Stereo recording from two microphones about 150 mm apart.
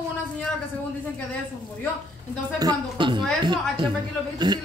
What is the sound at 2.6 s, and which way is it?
Speech, 30° right (ahead or behind).